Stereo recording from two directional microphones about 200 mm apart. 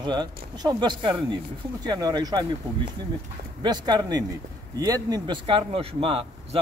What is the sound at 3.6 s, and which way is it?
A man's voice, 20° right (ahead or behind).